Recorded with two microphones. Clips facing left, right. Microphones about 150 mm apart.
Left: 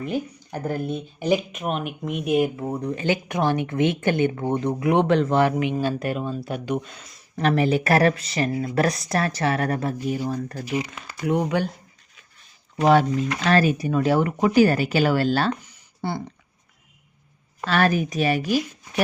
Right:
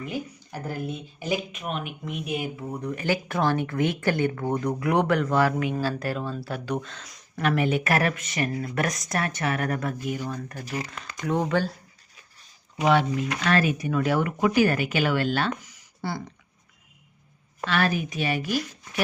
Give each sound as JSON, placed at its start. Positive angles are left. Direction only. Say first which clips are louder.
{"t": 0.0, "sound": "speech", "louder": "left 5 dB", "side_deg": 50}
{"t": 0.9, "sound": "speech", "louder": "left 8 dB", "side_deg": 40}
{"t": 2.8, "sound": "speech", "louder": "left 1 dB", "side_deg": 25}
{"t": 7.0, "sound": "speech", "louder": "right 1 dB", "side_deg": 0}
{"t": 7.3, "sound": "speech", "louder": "left 3 dB", "side_deg": 35}
{"t": 10.7, "sound": "speech", "louder": "left 5 dB", "side_deg": 15}
{"t": 12.7, "sound": "speech", "louder": "left 4 dB", "side_deg": 40}
{"t": 17.7, "sound": "speech", "louder": "left 4 dB", "side_deg": 45}